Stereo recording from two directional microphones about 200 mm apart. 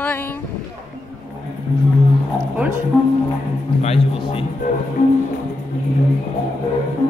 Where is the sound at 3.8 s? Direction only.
30° left (ahead or behind).